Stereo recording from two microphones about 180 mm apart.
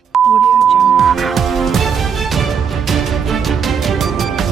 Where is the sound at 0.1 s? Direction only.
Centre (ahead or behind).